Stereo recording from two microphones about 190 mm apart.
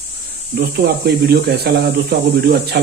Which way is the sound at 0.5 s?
55° right (ahead or behind).